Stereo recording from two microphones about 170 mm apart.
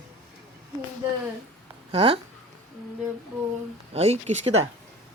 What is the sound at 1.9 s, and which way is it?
Speech, 35° right (ahead or behind).